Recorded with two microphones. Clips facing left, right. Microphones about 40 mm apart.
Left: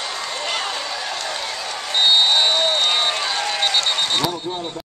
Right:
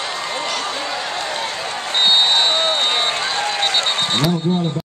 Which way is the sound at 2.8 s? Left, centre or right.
Centre.